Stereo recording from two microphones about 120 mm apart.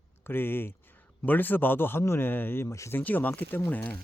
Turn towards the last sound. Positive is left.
turn(degrees=10)  # may be behind; listen again after turning